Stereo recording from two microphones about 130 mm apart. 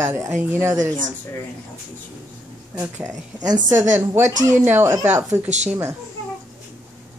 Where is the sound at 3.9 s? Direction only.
20° right (ahead or behind).